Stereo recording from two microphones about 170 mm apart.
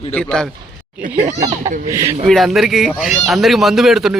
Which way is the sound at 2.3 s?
Centre (ahead or behind).